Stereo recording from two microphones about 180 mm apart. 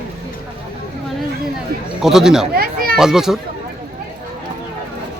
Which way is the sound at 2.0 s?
Centre (ahead or behind).